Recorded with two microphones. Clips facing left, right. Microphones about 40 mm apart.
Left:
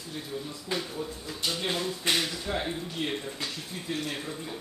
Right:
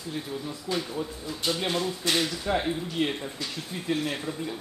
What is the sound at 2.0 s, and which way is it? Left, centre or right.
Speech, left.